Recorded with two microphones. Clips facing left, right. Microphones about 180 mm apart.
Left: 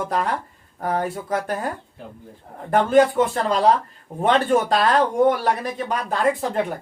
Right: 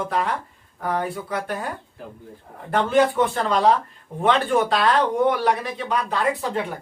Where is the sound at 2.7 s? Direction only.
45° left (ahead or behind).